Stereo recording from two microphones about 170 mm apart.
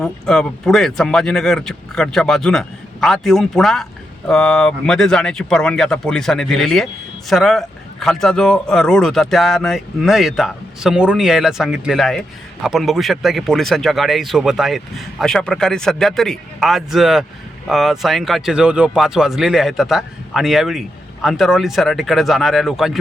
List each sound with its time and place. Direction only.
0.0 s speech: 5° left (ahead or behind)